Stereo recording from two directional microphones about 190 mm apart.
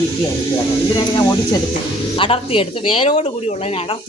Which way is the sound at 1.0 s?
20° left (ahead or behind).